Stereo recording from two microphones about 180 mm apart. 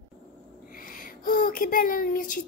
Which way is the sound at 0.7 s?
50° left (ahead or behind).